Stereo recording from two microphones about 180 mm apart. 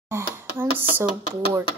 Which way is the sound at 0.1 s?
10° right (ahead or behind).